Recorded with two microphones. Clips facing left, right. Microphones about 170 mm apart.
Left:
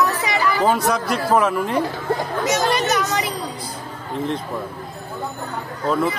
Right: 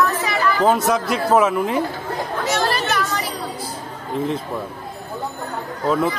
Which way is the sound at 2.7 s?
20° left (ahead or behind).